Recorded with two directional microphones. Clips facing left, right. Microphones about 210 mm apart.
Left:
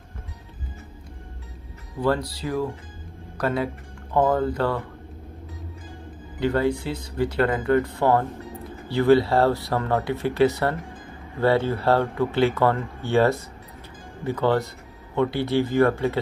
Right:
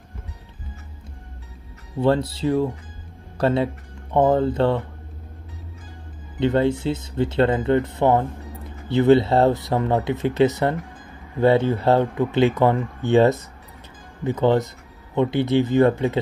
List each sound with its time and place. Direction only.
2.0 s speech: 25° right (ahead or behind)
6.4 s speech: 25° right (ahead or behind)